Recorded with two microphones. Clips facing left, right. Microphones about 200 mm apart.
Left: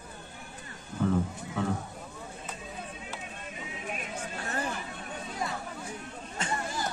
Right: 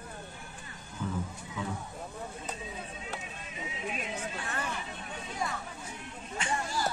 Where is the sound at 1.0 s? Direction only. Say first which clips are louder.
Left 8 dB; 65° left (ahead or behind).